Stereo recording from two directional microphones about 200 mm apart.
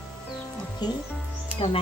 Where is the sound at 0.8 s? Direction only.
20° left (ahead or behind).